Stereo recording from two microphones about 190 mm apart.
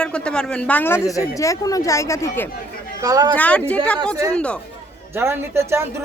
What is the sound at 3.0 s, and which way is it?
Speech, 20° right (ahead or behind).